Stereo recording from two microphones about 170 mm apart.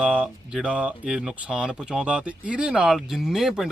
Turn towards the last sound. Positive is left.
turn(degrees=0)  # may be behind; listen again after turning